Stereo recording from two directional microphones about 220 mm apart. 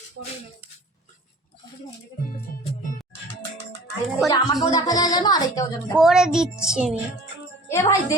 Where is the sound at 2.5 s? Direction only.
40° left (ahead or behind).